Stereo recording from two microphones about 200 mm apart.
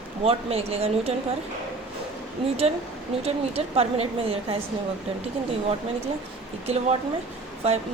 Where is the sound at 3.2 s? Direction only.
30° right (ahead or behind).